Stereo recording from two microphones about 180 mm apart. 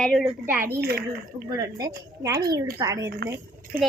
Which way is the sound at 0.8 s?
60° right (ahead or behind).